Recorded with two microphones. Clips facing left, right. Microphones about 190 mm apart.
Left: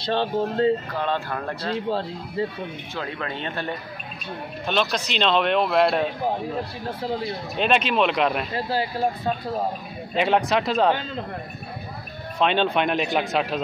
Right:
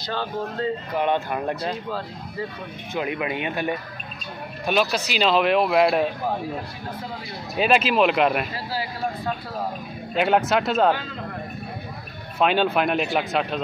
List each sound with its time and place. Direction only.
0.0 s speech: 30° left (ahead or behind)
0.9 s speech: 20° right (ahead or behind)
1.9 s speech: 30° left (ahead or behind)
2.9 s speech: 15° right (ahead or behind)
7.5 s speech: 5° right (ahead or behind)
8.6 s speech: 25° left (ahead or behind)
10.1 s speech: centre (ahead or behind)
12.4 s speech: 5° right (ahead or behind)